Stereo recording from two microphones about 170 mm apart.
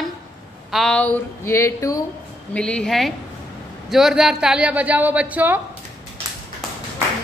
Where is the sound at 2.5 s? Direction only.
5° left (ahead or behind).